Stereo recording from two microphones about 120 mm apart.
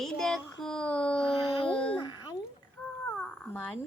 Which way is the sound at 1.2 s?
50° left (ahead or behind).